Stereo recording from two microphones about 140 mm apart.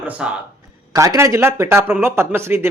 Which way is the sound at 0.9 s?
20° right (ahead or behind).